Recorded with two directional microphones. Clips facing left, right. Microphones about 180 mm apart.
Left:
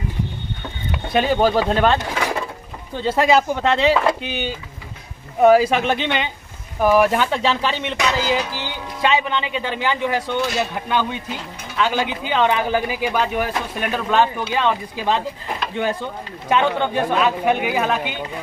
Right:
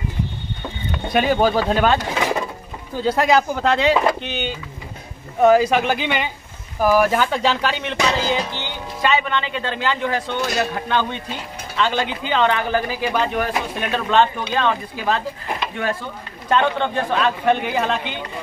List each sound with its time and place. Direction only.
1.0 s speech: centre (ahead or behind)
8.0 s music: 30° right (ahead or behind)
8.5 s speech: 10° left (ahead or behind)
16.4 s speech: 10° left (ahead or behind)